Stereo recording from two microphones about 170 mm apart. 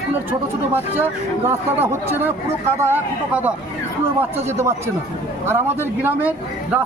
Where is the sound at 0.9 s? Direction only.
10° right (ahead or behind).